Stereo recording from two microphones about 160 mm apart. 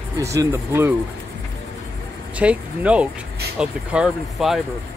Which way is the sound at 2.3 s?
10° right (ahead or behind).